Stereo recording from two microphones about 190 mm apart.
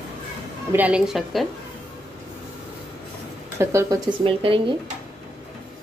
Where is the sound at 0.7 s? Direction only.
5° right (ahead or behind).